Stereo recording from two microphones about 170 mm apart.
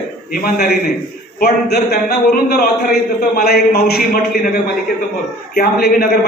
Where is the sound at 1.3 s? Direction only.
65° left (ahead or behind).